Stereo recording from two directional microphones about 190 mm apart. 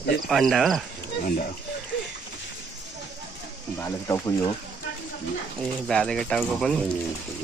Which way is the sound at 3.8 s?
10° left (ahead or behind).